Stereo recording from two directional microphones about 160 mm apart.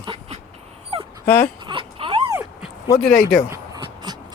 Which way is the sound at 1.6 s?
30° right (ahead or behind).